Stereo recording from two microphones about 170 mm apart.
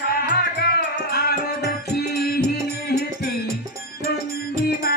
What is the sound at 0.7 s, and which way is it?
Music, 70° left (ahead or behind).